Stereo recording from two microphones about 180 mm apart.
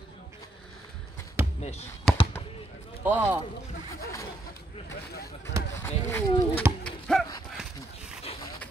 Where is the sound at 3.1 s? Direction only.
10° right (ahead or behind).